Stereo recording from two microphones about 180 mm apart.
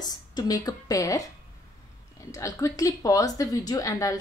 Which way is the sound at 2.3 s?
20° left (ahead or behind).